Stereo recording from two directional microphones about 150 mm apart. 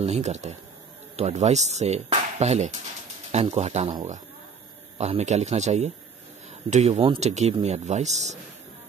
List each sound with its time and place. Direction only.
0.0 s speech: 50° right (ahead or behind)
4.9 s speech: 45° right (ahead or behind)